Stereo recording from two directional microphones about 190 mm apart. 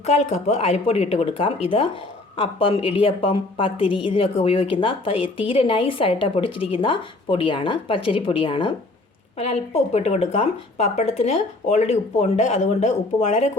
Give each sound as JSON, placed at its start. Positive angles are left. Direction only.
{"t": 0.0, "sound": "a woman's voice", "side_deg": 35}